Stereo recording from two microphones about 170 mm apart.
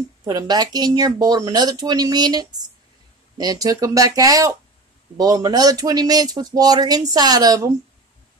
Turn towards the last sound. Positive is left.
turn(degrees=-20)  # may be behind; listen again after turning